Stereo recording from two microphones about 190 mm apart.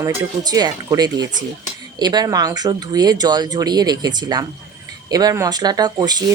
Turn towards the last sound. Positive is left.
turn(degrees=-20)  # may be behind; listen again after turning